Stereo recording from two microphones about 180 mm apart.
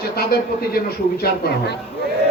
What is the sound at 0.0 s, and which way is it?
A man's voice, 60° left (ahead or behind).